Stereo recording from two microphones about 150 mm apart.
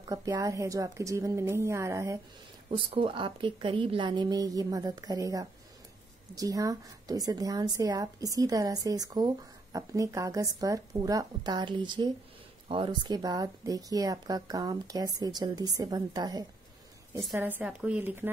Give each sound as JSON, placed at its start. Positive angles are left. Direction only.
{"t": 0.1, "sound": "a woman's voice", "side_deg": -25}
{"t": 2.7, "sound": "a woman's voice", "side_deg": -35}
{"t": 17.3, "sound": "speech", "side_deg": -10}